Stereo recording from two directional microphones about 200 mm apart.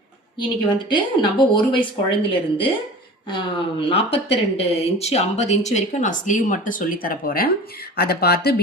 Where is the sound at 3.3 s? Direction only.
25° left (ahead or behind).